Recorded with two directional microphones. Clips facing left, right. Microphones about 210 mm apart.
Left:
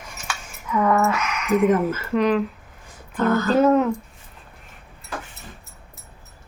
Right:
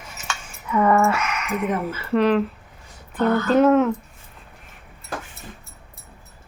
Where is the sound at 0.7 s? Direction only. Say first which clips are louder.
Right 2 dB; 5° right (ahead or behind).